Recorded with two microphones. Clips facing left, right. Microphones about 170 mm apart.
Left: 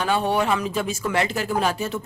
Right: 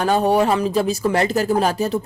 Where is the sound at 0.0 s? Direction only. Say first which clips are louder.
Right 5 dB; 40° right (ahead or behind).